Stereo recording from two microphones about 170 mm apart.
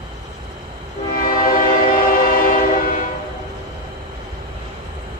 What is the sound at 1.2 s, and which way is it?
Train, 55° left (ahead or behind).